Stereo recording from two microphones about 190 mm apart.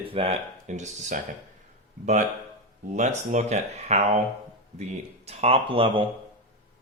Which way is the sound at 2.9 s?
40° right (ahead or behind).